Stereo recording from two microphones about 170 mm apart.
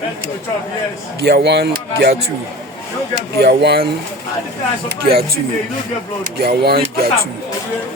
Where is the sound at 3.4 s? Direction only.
75° right (ahead or behind).